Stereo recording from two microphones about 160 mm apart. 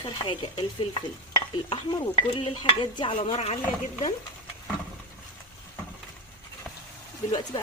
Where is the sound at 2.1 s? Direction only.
40° left (ahead or behind).